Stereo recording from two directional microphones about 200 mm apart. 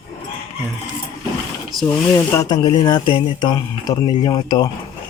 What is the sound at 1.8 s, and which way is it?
Speech, 15° left (ahead or behind).